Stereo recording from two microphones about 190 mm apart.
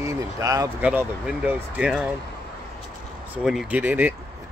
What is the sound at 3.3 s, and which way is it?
Speech, 5° right (ahead or behind).